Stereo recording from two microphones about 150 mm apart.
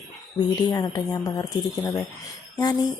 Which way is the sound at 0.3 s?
25° left (ahead or behind).